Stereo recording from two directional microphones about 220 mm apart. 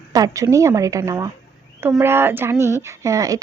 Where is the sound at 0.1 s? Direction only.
15° right (ahead or behind).